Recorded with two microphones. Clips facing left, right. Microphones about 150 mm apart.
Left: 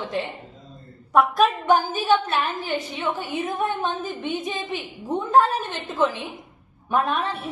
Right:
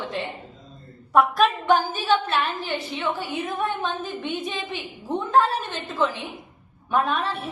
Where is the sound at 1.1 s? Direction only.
Centre (ahead or behind).